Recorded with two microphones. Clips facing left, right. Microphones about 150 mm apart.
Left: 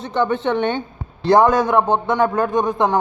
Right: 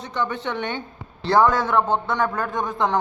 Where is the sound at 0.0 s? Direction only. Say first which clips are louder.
Left 7 dB; 25° left (ahead or behind).